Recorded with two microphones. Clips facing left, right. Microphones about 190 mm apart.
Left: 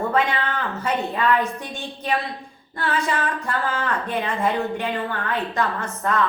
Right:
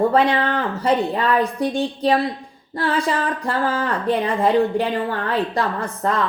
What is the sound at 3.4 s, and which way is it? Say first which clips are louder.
A woman's voice: right 4 dB; 35° right (ahead or behind).